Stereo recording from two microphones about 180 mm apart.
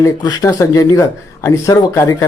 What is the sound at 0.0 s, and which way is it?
Speech, 20° left (ahead or behind).